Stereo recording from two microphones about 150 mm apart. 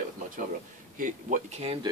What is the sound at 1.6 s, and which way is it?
Speech, 40° right (ahead or behind).